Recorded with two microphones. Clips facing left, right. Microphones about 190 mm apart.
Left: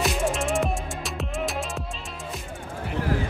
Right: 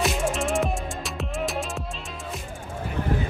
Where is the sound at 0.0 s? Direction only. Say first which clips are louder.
Even; centre (ahead or behind).